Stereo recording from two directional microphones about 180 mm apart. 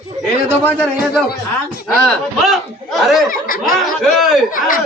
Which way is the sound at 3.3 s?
50° left (ahead or behind).